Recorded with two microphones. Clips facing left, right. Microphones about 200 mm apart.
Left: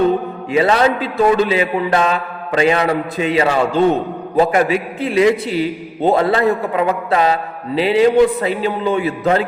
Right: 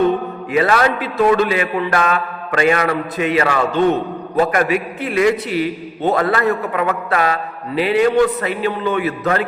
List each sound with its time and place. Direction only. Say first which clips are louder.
0.5 s a man's voice: left 2 dB; 25° left (ahead or behind)